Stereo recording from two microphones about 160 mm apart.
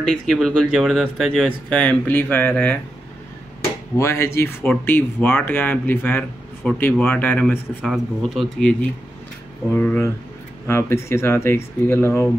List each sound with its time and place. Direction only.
0.1 s speech: centre (ahead or behind)
4.0 s speech: 15° left (ahead or behind)